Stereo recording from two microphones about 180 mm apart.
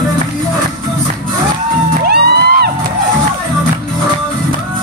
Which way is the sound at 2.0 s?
60° right (ahead or behind).